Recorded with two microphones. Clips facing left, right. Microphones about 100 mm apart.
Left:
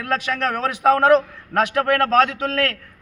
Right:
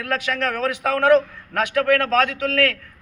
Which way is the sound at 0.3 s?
25° left (ahead or behind).